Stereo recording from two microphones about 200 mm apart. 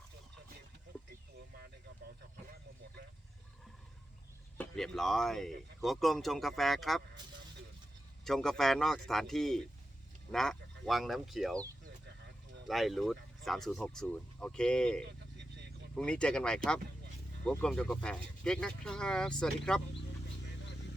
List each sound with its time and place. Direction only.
4.5 s speech: 5° left (ahead or behind)
8.2 s speech: centre (ahead or behind)
12.6 s speech: centre (ahead or behind)